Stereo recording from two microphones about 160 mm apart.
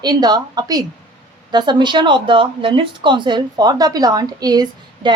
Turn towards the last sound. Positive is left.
turn(degrees=-25)  # may be behind; listen again after turning